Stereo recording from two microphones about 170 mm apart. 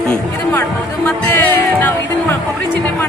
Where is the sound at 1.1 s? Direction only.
10° left (ahead or behind).